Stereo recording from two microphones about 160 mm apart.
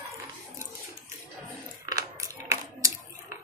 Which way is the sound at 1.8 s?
20° right (ahead or behind).